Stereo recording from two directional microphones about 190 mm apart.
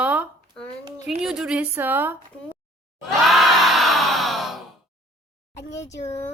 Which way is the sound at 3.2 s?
Centre (ahead or behind).